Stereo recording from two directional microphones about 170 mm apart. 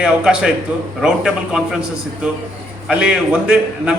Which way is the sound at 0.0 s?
5° right (ahead or behind).